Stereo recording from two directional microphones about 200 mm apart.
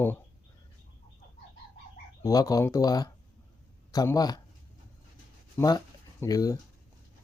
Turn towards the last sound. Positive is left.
turn(degrees=15)  # may be behind; listen again after turning